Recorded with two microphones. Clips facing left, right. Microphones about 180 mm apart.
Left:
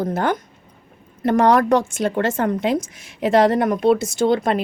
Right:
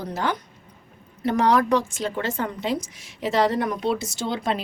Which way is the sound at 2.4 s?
50° left (ahead or behind).